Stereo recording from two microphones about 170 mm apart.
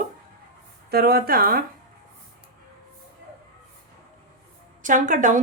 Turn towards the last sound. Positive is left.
turn(degrees=-50)  # may be behind; listen again after turning